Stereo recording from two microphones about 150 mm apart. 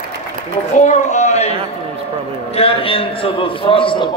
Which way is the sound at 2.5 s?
40° left (ahead or behind).